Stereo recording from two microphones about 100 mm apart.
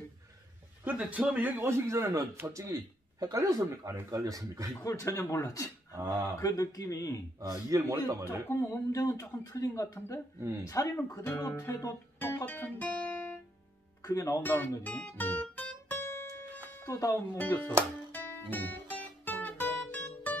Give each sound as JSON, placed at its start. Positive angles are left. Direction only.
{"t": 0.8, "sound": "a man's voice", "side_deg": -10}
{"t": 4.8, "sound": "speech", "side_deg": 30}
{"t": 5.9, "sound": "speech", "side_deg": -35}
{"t": 6.4, "sound": "speech", "side_deg": 35}
{"t": 7.3, "sound": "speech", "side_deg": -35}
{"t": 8.5, "sound": "speech", "side_deg": 30}
{"t": 12.2, "sound": "music", "side_deg": 20}
{"t": 14.0, "sound": "speech", "side_deg": 30}
{"t": 14.4, "sound": "speech", "side_deg": 20}
{"t": 14.8, "sound": "guitar", "side_deg": 15}
{"t": 16.8, "sound": "speech", "side_deg": 30}
{"t": 17.4, "sound": "speech", "side_deg": 20}
{"t": 18.1, "sound": "music", "side_deg": 20}